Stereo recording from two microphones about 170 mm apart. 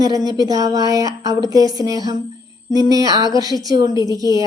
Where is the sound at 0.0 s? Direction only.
20° right (ahead or behind).